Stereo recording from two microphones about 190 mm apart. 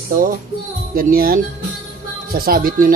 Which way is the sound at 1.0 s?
50° right (ahead or behind).